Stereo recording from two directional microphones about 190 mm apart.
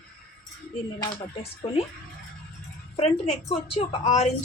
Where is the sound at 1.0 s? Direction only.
30° left (ahead or behind).